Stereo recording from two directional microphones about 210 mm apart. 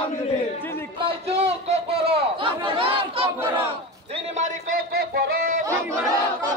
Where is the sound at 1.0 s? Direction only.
25° right (ahead or behind).